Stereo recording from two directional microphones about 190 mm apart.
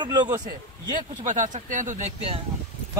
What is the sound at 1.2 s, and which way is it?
Speech, 40° right (ahead or behind).